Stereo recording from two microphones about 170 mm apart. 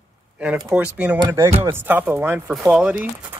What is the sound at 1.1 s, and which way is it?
Speech, 20° right (ahead or behind).